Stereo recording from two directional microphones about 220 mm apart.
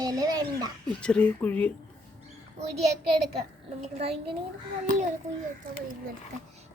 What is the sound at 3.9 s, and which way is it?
Speech, 25° right (ahead or behind).